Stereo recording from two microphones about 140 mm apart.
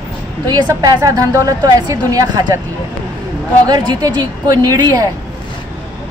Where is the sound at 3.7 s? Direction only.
30° right (ahead or behind).